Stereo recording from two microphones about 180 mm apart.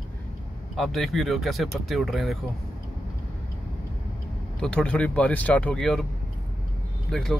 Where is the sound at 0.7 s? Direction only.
Centre (ahead or behind).